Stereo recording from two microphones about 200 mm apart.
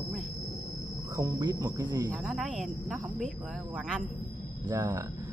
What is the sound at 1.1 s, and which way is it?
Speech, 20° right (ahead or behind).